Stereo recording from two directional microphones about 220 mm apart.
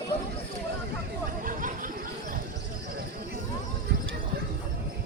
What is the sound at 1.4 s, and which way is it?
Chatter, 40° right (ahead or behind).